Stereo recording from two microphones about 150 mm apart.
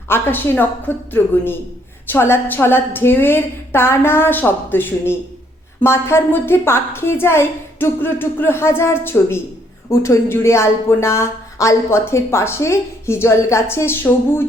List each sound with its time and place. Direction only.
0.1 s speech: 15° left (ahead or behind)